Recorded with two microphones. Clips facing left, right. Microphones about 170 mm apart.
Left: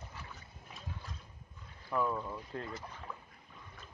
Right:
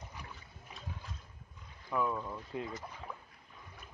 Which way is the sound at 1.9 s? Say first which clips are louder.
Even; 5° left (ahead or behind).